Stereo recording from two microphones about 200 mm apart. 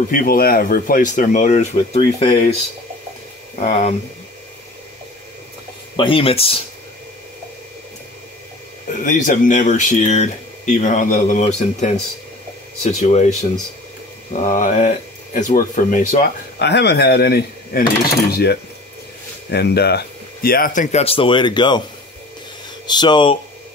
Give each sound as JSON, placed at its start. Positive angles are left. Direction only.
{"t": 0.1, "sound": "speech", "side_deg": 45}
{"t": 3.5, "sound": "speech", "side_deg": 35}
{"t": 5.9, "sound": "speech", "side_deg": 25}
{"t": 9.0, "sound": "speech", "side_deg": 40}
{"t": 14.4, "sound": "speech", "side_deg": 40}
{"t": 16.5, "sound": "speech", "side_deg": 55}
{"t": 22.8, "sound": "speech", "side_deg": 20}